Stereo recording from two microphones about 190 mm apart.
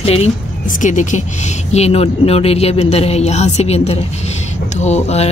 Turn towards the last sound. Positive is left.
turn(degrees=35)  # may be behind; listen again after turning